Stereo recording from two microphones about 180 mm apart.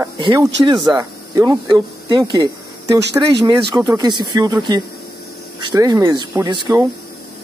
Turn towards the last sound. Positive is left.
turn(degrees=-25)  # may be behind; listen again after turning